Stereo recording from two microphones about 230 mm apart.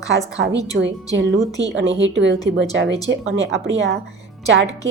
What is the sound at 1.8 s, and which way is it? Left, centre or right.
Speech, right.